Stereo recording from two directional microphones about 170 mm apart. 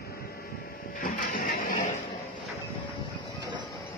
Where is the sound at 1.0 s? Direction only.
55° left (ahead or behind).